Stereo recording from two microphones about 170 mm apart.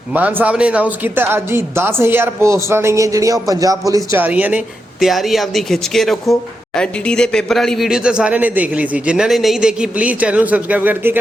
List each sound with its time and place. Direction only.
0.1 s speech: 10° right (ahead or behind)